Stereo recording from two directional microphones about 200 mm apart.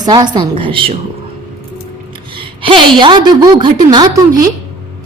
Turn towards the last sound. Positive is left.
turn(degrees=-20)  # may be behind; listen again after turning